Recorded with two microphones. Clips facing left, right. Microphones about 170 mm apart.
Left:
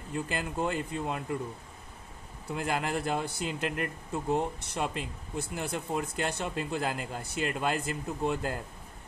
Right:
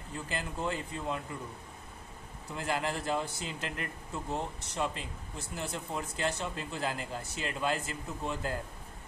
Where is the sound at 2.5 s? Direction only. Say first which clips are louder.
Left 3 dB; 55° left (ahead or behind).